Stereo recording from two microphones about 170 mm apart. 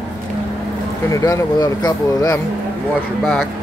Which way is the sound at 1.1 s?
20° left (ahead or behind).